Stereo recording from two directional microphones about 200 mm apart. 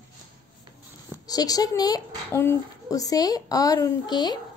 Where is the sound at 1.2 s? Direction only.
20° left (ahead or behind).